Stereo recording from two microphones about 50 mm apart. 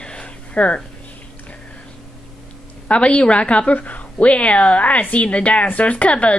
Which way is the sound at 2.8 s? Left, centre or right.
Left.